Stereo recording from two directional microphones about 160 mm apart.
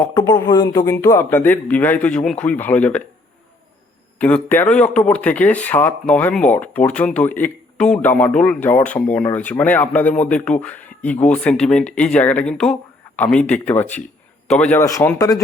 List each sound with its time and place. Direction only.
0.1 s speech: 25° left (ahead or behind)
4.2 s a man's voice: 10° left (ahead or behind)
14.8 s speech: 20° left (ahead or behind)